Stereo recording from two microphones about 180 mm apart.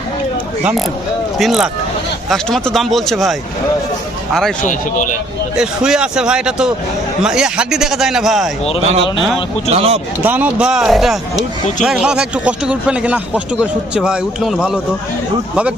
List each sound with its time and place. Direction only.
1.4 s speech: centre (ahead or behind)
4.6 s a man's voice: 45° left (ahead or behind)
5.5 s speech: 5° right (ahead or behind)
9.6 s speech: 35° right (ahead or behind)
10.2 s speech: 10° right (ahead or behind)